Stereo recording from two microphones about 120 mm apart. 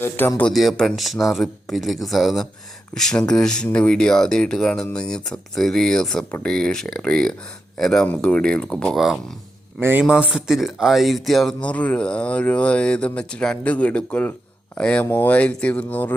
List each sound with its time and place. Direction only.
0.0 s speech: 20° left (ahead or behind)
0.5 s speech: centre (ahead or behind)